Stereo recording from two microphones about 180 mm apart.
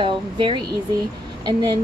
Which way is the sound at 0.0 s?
30° right (ahead or behind).